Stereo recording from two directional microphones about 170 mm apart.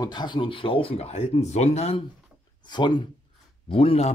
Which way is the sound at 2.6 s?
25° left (ahead or behind).